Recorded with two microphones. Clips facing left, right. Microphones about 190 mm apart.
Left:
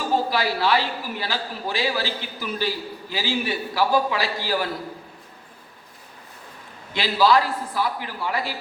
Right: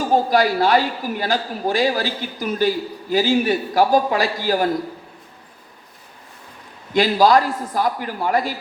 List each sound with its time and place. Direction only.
0.1 s a man's voice: 45° right (ahead or behind)
6.9 s a man's voice: 45° right (ahead or behind)